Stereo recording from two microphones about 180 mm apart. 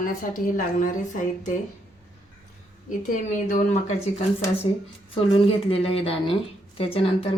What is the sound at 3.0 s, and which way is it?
Speech, 45° left (ahead or behind).